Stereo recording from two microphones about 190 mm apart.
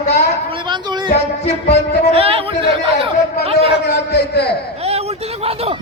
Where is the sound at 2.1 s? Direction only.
30° right (ahead or behind).